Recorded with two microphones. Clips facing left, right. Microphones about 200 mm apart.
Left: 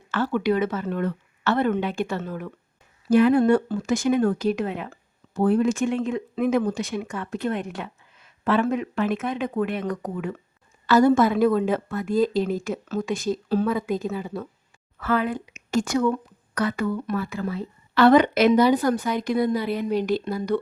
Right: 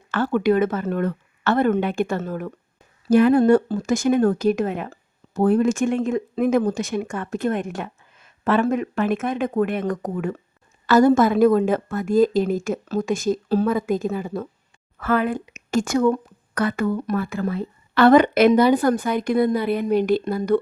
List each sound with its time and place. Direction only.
0.1 s speech: 50° right (ahead or behind)